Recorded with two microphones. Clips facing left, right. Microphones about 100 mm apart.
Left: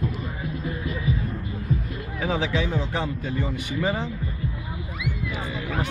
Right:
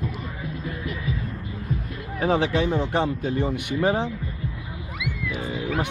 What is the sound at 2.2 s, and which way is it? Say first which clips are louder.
Speech: right 4 dB; 55° right (ahead or behind).